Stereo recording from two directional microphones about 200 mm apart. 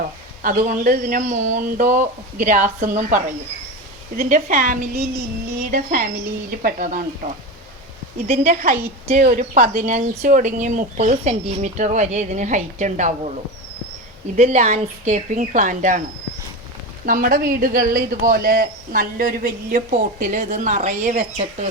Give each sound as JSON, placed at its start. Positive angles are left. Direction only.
{"t": 0.4, "sound": "speech", "side_deg": -45}
{"t": 8.3, "sound": "speech", "side_deg": -35}
{"t": 14.3, "sound": "speech", "side_deg": -35}
{"t": 17.1, "sound": "speech", "side_deg": -45}